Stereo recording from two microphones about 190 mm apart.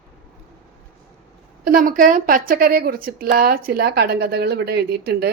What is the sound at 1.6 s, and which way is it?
A woman's voice, 50° right (ahead or behind).